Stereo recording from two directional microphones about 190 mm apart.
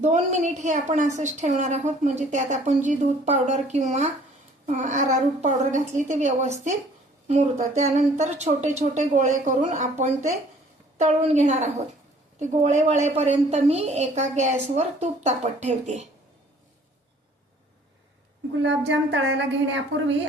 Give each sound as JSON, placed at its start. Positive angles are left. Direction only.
{"t": 0.0, "sound": "a woman's voice", "side_deg": -35}
{"t": 18.6, "sound": "a woman's voice", "side_deg": -65}